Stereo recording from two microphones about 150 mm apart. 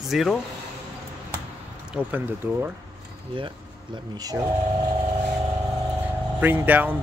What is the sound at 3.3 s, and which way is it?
Speech, 30° right (ahead or behind).